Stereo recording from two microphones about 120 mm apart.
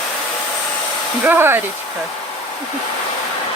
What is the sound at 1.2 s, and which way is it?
Speech, 15° right (ahead or behind).